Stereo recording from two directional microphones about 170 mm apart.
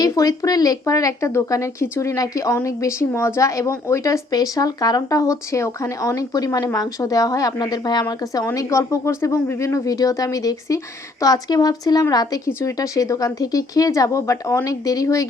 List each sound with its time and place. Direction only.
0.0 s speech: 20° left (ahead or behind)